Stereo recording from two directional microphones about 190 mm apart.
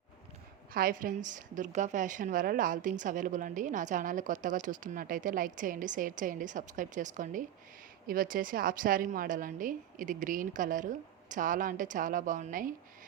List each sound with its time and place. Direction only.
0.7 s a woman's voice: 50° right (ahead or behind)